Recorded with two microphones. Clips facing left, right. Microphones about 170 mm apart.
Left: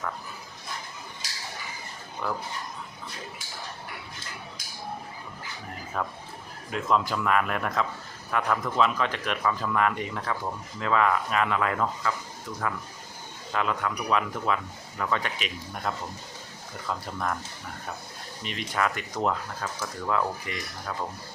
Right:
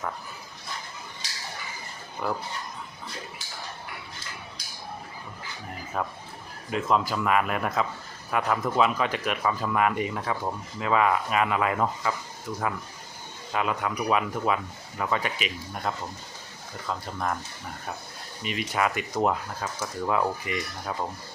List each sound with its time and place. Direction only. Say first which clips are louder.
6.0 s speech: right 1 dB; 5° right (ahead or behind)
13.5 s speech: right 1 dB; 15° right (ahead or behind)
18.4 s speech: right 2 dB; 10° right (ahead or behind)